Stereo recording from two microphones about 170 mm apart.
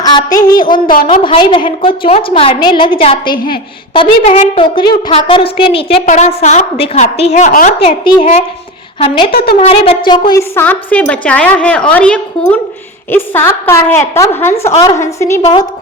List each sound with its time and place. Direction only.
0.0 s a woman's voice: 25° left (ahead or behind)
3.3 s a woman's voice: 60° left (ahead or behind)
3.9 s a woman's voice: 35° left (ahead or behind)
6.1 s a woman's voice: 45° left (ahead or behind)
7.8 s a woman's voice: 30° left (ahead or behind)
10.5 s a woman's voice: 10° left (ahead or behind)